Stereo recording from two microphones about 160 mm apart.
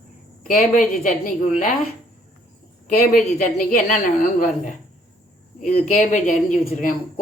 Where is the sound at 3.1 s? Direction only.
55° left (ahead or behind).